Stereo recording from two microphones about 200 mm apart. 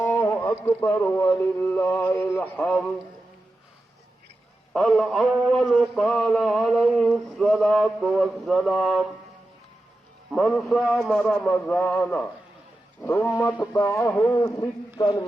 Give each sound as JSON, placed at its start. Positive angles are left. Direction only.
{"t": 0.0, "sound": "music", "side_deg": 10}
{"t": 4.7, "sound": "speech", "side_deg": 0}
{"t": 10.3, "sound": "speech", "side_deg": 0}
{"t": 13.0, "sound": "music", "side_deg": 10}
{"t": 14.9, "sound": "speech", "side_deg": 20}